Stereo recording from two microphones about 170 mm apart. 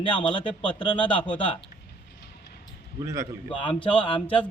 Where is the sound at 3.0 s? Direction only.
20° right (ahead or behind).